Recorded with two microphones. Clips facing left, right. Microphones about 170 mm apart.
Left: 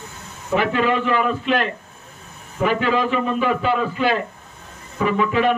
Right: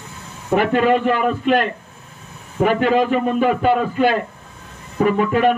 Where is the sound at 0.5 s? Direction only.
50° right (ahead or behind).